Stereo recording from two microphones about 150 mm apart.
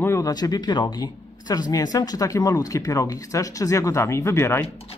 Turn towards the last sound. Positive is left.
turn(degrees=15)  # may be behind; listen again after turning